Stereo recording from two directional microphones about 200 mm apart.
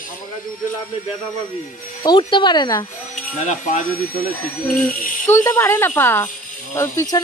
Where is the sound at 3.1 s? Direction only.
40° left (ahead or behind).